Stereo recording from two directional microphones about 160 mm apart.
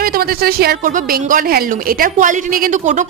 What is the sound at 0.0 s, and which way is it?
Speech, 70° right (ahead or behind).